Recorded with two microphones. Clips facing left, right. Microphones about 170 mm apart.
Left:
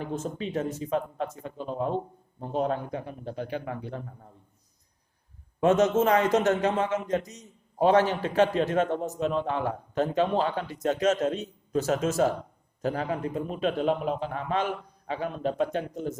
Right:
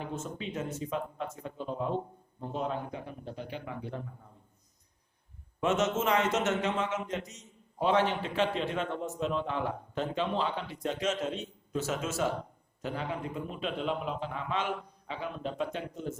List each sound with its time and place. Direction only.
0.1 s a man's voice: 35° left (ahead or behind)
2.5 s a man's voice: 50° left (ahead or behind)
5.5 s a man's voice: 40° left (ahead or behind)